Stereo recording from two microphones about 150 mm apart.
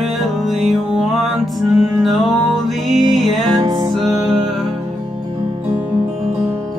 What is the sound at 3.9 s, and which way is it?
Music, centre (ahead or behind).